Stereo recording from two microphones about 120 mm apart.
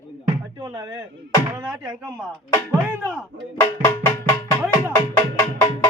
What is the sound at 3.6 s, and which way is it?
Music, 25° left (ahead or behind).